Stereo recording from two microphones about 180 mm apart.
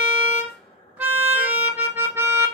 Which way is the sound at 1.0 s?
10° right (ahead or behind).